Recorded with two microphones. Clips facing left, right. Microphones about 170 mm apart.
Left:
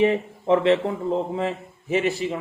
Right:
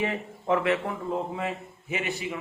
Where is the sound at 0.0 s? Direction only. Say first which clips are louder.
Left 9 dB; 25° left (ahead or behind).